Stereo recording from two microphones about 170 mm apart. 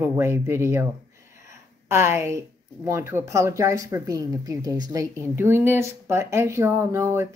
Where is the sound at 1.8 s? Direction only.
15° right (ahead or behind).